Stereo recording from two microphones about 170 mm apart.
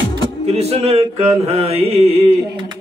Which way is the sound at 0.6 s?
35° right (ahead or behind).